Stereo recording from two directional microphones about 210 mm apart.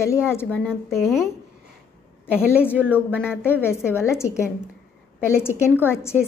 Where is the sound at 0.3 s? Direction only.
10° left (ahead or behind).